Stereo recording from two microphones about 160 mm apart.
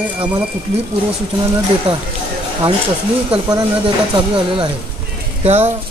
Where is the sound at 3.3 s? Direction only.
25° right (ahead or behind).